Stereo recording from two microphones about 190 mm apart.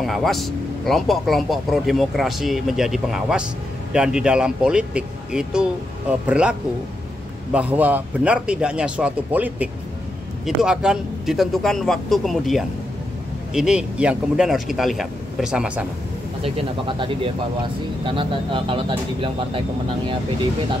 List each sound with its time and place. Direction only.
0.0 s speech: centre (ahead or behind)
7.5 s a man's voice: 10° right (ahead or behind)
16.4 s speech: 25° right (ahead or behind)